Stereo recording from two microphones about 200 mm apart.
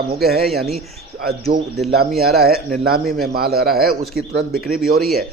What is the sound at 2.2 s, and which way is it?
A man's voice, 50° right (ahead or behind).